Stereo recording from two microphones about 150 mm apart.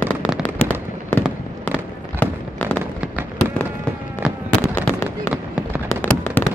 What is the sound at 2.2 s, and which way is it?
Fireworks, 15° left (ahead or behind).